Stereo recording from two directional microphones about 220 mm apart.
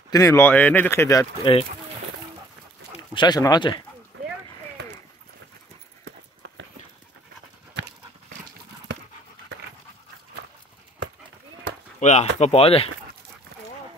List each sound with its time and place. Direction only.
0.1 s speech: 15° left (ahead or behind)
2.9 s speech: 20° left (ahead or behind)
4.1 s run: 60° right (ahead or behind)
6.0 s clip-clop: 55° right (ahead or behind)
12.0 s speech: 30° left (ahead or behind)